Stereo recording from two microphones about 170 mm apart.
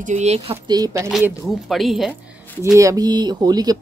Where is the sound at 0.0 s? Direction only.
40° right (ahead or behind).